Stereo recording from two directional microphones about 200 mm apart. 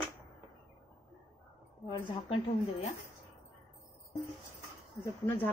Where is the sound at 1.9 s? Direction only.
25° left (ahead or behind).